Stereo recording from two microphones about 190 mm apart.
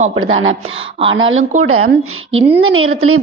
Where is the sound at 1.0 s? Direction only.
90° right.